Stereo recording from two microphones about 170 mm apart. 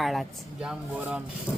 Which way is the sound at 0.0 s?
Centre (ahead or behind).